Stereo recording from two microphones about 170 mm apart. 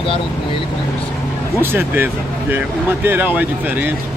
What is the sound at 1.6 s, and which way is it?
Speech, 10° right (ahead or behind).